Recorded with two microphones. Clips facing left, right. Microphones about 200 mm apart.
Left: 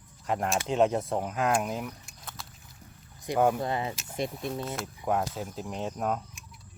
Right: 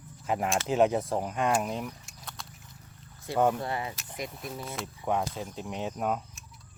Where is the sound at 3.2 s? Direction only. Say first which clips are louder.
Left 1 dB; 15° left (ahead or behind).